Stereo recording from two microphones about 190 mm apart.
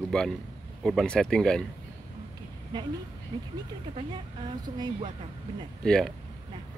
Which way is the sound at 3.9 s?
25° right (ahead or behind).